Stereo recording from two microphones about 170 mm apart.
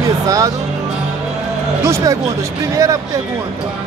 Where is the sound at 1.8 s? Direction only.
20° right (ahead or behind).